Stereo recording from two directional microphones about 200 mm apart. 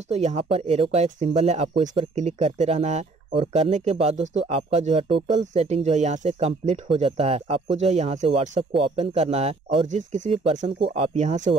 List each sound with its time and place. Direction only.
0.1 s speech: 35° right (ahead or behind)